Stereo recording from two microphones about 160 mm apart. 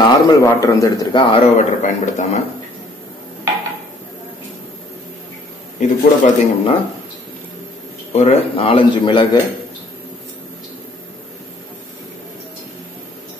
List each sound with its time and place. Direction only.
0.0 s a man's voice: 25° left (ahead or behind)
1.3 s a man's voice: 40° left (ahead or behind)
5.8 s a man's voice: 45° left (ahead or behind)
8.1 s a man's voice: 40° left (ahead or behind)